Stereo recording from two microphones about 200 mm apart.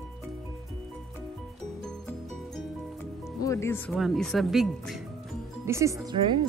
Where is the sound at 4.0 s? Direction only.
Centre (ahead or behind).